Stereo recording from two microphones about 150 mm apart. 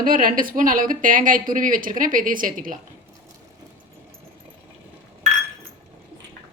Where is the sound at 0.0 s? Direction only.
65° right (ahead or behind).